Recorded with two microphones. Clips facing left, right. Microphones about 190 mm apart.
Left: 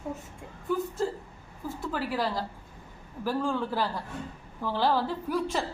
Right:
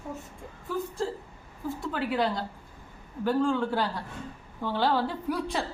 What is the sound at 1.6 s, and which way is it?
A woman's voice, centre (ahead or behind).